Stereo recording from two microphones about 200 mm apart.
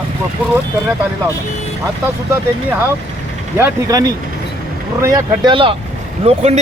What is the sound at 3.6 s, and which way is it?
A man's voice, 15° right (ahead or behind).